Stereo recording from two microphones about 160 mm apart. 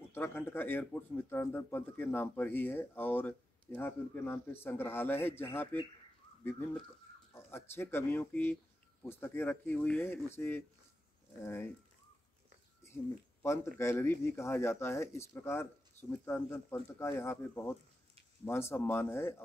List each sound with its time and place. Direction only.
0.1 s speech: 10° left (ahead or behind)
12.8 s speech: 15° left (ahead or behind)